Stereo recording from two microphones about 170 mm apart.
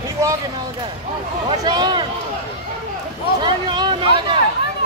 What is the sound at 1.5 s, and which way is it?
Speech, 25° right (ahead or behind).